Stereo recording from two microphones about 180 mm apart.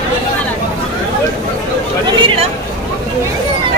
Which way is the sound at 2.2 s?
30° right (ahead or behind).